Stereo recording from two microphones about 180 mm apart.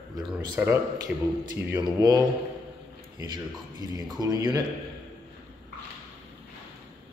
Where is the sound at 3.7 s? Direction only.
20° right (ahead or behind).